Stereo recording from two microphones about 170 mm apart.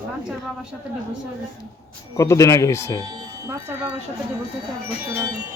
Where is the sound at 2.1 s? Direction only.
15° left (ahead or behind).